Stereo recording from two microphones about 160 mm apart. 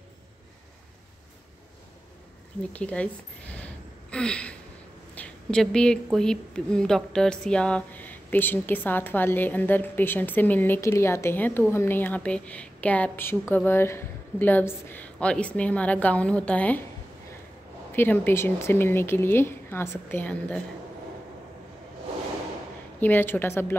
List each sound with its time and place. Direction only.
2.7 s speech: 10° left (ahead or behind)
3.5 s a sound: 5° left (ahead or behind)
6.1 s speech: 5° left (ahead or behind)
17.9 s speech: 10° left (ahead or behind)
22.9 s speech: 10° left (ahead or behind)